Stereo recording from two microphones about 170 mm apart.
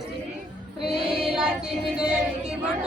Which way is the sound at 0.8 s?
Centre (ahead or behind).